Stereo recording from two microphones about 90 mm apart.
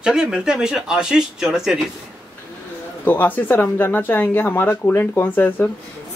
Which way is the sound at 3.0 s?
20° left (ahead or behind).